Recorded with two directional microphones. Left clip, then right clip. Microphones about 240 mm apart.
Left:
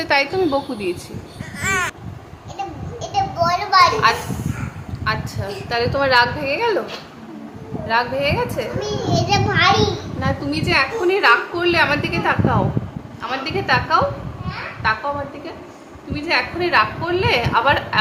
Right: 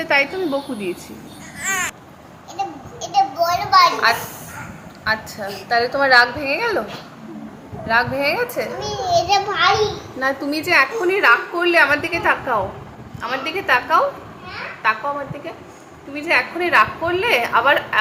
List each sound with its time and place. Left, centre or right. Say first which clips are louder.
0.0 s a woman's voice: left 1 dB; centre
1.5 s vehicle: left 2 dB; left
2.6 s a sound: right 2 dB; centre
5.0 s a woman's voice: right 1 dB; centre
7.9 s a woman's voice: right 1 dB; centre
8.8 s a child's voice: right 4 dB; centre
10.2 s a woman's voice: right 5 dB; centre
16.2 s a woman's voice: right 1 dB; centre